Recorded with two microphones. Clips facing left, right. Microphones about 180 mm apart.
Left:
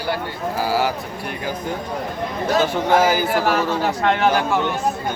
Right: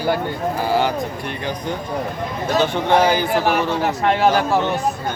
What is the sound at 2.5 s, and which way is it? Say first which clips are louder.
Speech: right 1 dB; 5° left (ahead or behind).